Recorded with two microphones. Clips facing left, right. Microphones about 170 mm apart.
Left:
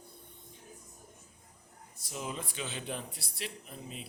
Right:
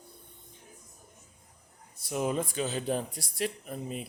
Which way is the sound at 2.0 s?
55° right (ahead or behind).